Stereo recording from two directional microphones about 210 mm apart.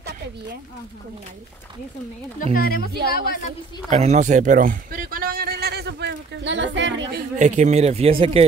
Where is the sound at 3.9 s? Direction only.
30° right (ahead or behind); by 7.2 s 60° right (ahead or behind).